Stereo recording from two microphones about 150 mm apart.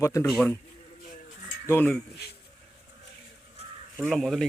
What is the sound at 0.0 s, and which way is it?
Speech, 20° left (ahead or behind).